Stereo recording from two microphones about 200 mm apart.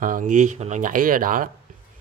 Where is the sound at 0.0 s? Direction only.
40° right (ahead or behind).